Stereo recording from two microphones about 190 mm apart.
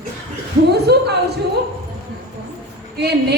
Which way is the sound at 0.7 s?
60° right (ahead or behind).